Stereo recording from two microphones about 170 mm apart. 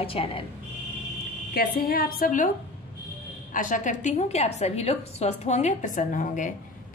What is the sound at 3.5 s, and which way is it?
A woman's voice, 50° left (ahead or behind).